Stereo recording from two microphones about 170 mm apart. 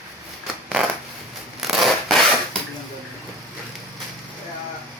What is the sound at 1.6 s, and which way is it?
Rub, centre (ahead or behind).